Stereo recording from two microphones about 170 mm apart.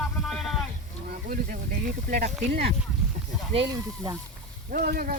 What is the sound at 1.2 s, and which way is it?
Speech, 50° right (ahead or behind).